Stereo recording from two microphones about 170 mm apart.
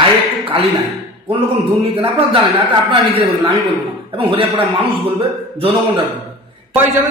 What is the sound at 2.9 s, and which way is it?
A woman's voice, 30° right (ahead or behind).